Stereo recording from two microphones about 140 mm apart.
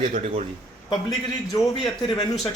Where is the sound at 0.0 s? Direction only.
70° right (ahead or behind).